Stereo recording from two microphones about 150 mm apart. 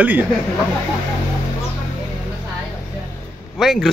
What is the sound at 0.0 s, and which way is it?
Speech, 10° right (ahead or behind).